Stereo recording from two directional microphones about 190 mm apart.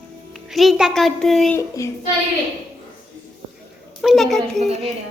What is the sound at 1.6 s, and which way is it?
Child singing, 15° left (ahead or behind).